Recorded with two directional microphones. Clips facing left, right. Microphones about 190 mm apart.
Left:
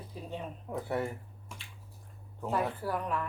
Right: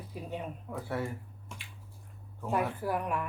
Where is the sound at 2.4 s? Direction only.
10° right (ahead or behind).